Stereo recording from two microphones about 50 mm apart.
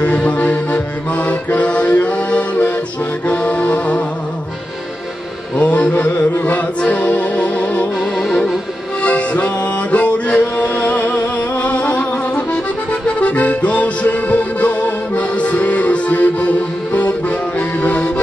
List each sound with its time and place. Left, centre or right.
0.0 s music: left
3.3 s accordion: left
5.6 s mantra: left
6.9 s music: left
8.0 s music: centre
9.0 s music: left
13.0 s accordion: left